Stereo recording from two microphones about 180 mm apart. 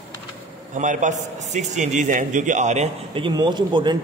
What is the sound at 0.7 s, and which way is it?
A man's voice, 45° right (ahead or behind).